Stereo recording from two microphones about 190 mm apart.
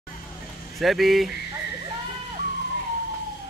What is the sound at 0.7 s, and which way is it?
Speech, centre (ahead or behind).